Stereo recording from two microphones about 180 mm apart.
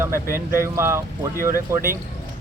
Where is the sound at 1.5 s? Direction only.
55° right (ahead or behind).